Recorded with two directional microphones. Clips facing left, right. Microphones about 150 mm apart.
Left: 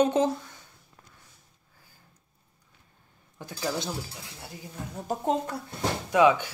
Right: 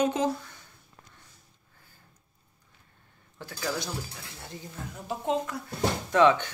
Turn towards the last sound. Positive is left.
turn(degrees=10)  # may be behind; listen again after turning